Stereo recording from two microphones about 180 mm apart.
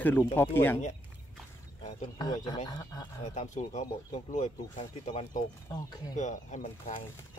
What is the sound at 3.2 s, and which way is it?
Speech, 40° left (ahead or behind).